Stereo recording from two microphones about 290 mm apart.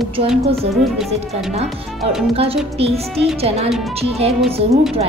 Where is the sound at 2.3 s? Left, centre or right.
Centre.